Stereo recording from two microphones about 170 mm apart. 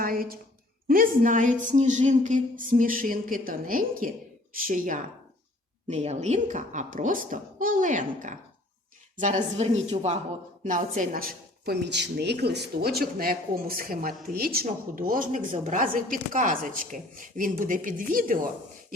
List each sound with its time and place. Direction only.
0.0 s a sound: 60° right (ahead or behind)
0.9 s a woman's voice: 55° right (ahead or behind); by 10.2 s 35° right (ahead or behind)
10.6 s speech: 50° right (ahead or behind)